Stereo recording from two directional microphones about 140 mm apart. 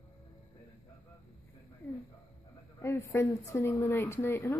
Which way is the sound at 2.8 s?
20° left (ahead or behind).